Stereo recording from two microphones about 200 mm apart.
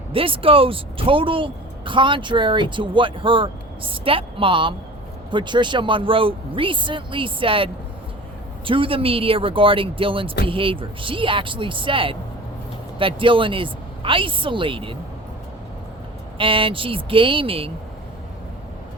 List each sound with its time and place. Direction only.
0.1 s speech: 25° right (ahead or behind)
16.4 s speech: 25° right (ahead or behind)